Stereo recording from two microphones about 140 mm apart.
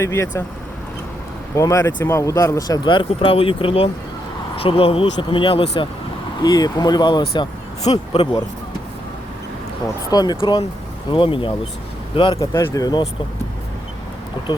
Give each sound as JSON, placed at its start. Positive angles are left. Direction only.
{"t": 0.0, "sound": "speech", "side_deg": 20}
{"t": 1.5, "sound": "speech", "side_deg": 20}
{"t": 10.1, "sound": "speech", "side_deg": 30}
{"t": 12.4, "sound": "speech", "side_deg": 20}